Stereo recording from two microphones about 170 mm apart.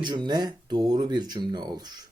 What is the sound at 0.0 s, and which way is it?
Speech, 25° right (ahead or behind).